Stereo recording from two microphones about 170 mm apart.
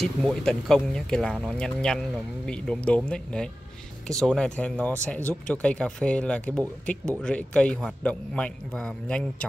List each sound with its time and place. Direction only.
0.0 s speech: centre (ahead or behind)